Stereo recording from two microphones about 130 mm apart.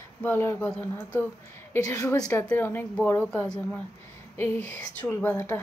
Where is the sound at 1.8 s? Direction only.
25° left (ahead or behind).